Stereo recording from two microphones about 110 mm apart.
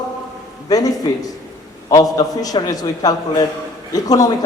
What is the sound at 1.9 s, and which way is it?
A man's voice, 35° left (ahead or behind).